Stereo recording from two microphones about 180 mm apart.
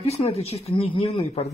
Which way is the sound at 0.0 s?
35° left (ahead or behind).